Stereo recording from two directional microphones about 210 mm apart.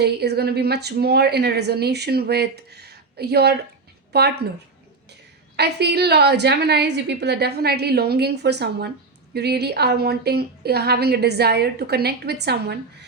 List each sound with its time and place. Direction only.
0.0 s a woman's voice: 50° right (ahead or behind)
5.5 s a woman's voice: 50° right (ahead or behind)